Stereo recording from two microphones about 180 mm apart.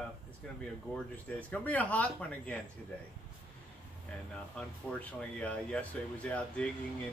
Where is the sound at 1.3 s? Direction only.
10° left (ahead or behind).